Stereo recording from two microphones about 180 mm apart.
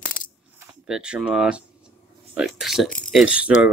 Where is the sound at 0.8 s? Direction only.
5° right (ahead or behind).